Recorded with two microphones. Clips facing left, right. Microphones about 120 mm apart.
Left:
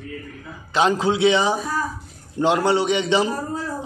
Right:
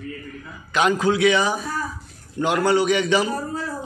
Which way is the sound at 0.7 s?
25° left (ahead or behind).